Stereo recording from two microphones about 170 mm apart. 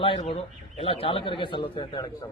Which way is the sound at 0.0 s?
35° left (ahead or behind).